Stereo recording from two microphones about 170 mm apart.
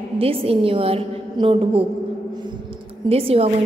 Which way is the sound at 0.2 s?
35° right (ahead or behind).